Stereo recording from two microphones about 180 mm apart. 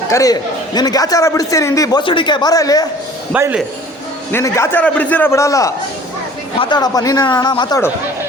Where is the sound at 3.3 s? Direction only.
10° right (ahead or behind).